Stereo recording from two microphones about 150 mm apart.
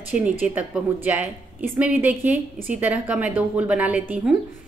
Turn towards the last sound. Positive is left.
turn(degrees=-10)  # may be behind; listen again after turning